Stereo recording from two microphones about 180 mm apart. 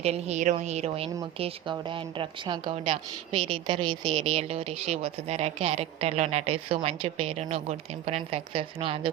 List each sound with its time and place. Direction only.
0.0 s speech: 35° right (ahead or behind)